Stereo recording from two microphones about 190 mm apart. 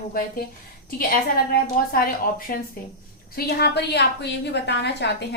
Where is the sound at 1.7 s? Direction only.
50° left (ahead or behind).